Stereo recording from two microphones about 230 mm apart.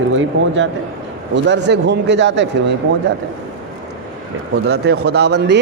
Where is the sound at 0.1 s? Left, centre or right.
Right.